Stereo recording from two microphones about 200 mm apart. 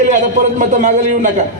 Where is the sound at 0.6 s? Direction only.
40° right (ahead or behind).